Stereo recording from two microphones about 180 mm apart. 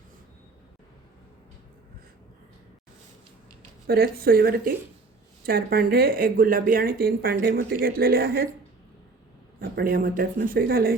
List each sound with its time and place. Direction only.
3.8 s speech: 55° right (ahead or behind)
9.6 s speech: 55° right (ahead or behind)